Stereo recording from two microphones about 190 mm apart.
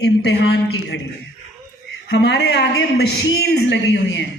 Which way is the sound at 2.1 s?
60° left (ahead or behind).